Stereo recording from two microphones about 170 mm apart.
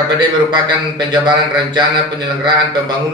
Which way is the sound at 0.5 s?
25° right (ahead or behind).